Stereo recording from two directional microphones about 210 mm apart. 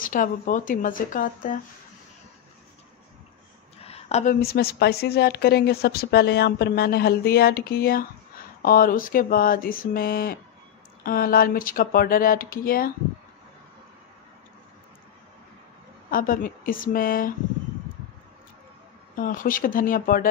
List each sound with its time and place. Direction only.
0.0 s speech: 40° left (ahead or behind)
3.8 s a woman's voice: 30° left (ahead or behind)
16.1 s speech: 40° left (ahead or behind)
19.1 s speech: 40° left (ahead or behind)